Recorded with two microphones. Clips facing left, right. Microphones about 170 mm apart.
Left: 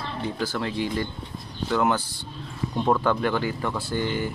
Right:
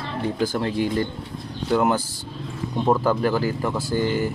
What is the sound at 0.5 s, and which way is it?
Speech, 40° right (ahead or behind).